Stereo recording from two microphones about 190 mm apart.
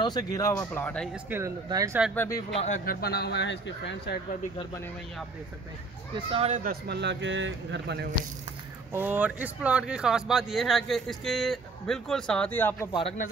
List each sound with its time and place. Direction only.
0.0 s speech: 20° left (ahead or behind)
1.3 s speech: 15° right (ahead or behind)
2.1 s speech: 15° left (ahead or behind)
2.6 s speech: 45° left (ahead or behind); by 4.2 s 65° left (ahead or behind)
6.1 s speech: 30° right (ahead or behind)
6.6 s a man's voice: 55° right (ahead or behind)
8.9 s speech: 10° right (ahead or behind); by 12.9 s 10° left (ahead or behind)